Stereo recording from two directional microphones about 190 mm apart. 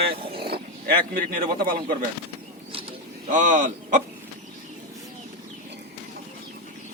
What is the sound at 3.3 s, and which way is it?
Speech, 40° right (ahead or behind).